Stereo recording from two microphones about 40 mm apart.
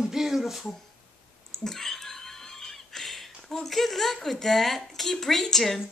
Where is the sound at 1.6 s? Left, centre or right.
Centre.